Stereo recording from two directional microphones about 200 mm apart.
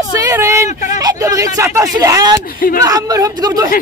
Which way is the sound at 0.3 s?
15° right (ahead or behind).